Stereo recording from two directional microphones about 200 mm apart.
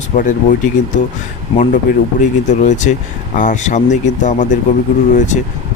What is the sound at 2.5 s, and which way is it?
Speech, 35° left (ahead or behind).